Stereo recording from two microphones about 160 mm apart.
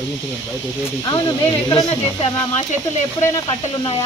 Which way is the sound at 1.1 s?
25° left (ahead or behind).